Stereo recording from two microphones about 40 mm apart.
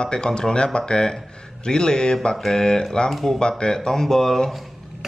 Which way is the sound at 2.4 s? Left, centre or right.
Centre.